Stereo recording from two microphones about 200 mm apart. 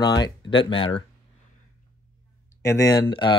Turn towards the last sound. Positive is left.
turn(degrees=20)  # may be behind; listen again after turning